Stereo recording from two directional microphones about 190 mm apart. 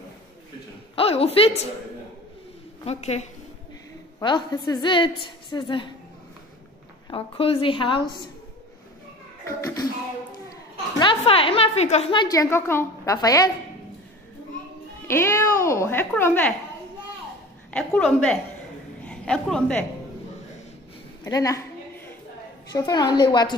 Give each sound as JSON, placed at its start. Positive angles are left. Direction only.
{"t": 0.9, "sound": "a woman's voice", "side_deg": 30}
{"t": 2.8, "sound": "a woman's voice", "side_deg": 35}
{"t": 4.2, "sound": "a woman's voice", "side_deg": 20}
{"t": 7.1, "sound": "a woman's voice", "side_deg": 30}
{"t": 9.5, "sound": "speech", "side_deg": 15}
{"t": 11.0, "sound": "a woman's voice", "side_deg": 25}
{"t": 15.0, "sound": "speech", "side_deg": 15}
{"t": 17.7, "sound": "a woman's voice", "side_deg": 5}
{"t": 21.2, "sound": "a sound", "side_deg": 15}
{"t": 22.7, "sound": "a woman's voice", "side_deg": 20}